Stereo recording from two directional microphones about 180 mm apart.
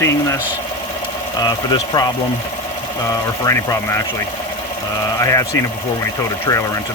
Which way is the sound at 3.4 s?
15° left (ahead or behind).